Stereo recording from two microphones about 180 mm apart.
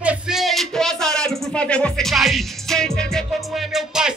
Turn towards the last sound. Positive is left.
turn(degrees=0)  # may be behind; listen again after turning